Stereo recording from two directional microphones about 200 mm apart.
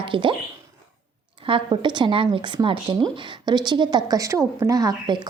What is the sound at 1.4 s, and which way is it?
A woman's voice, 25° right (ahead or behind).